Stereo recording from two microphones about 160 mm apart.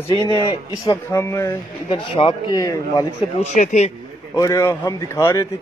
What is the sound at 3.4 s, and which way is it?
Speech, 50° left (ahead or behind).